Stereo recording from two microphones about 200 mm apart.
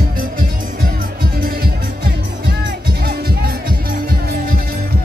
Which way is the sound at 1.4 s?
50° right (ahead or behind).